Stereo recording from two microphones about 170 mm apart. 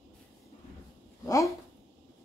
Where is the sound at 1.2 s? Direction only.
20° left (ahead or behind).